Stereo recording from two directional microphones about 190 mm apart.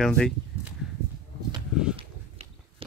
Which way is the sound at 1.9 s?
30° right (ahead or behind).